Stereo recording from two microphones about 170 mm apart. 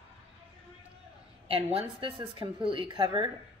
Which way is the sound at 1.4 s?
35° right (ahead or behind).